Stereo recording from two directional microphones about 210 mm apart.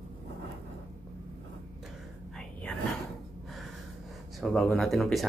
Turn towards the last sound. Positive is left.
turn(degrees=0)  # may be behind; listen again after turning